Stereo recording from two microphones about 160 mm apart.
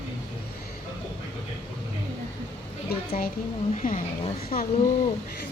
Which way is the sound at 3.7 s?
55° left (ahead or behind).